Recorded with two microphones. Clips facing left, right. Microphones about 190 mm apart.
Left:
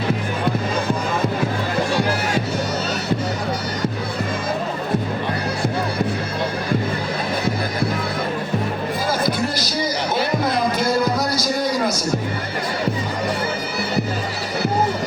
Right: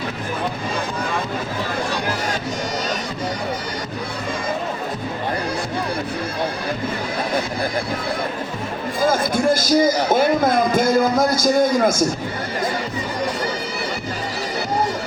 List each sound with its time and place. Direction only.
9.0 s music: 50° right (ahead or behind)